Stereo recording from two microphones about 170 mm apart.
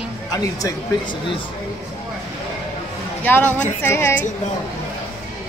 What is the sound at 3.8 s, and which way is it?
Speech, 15° left (ahead or behind).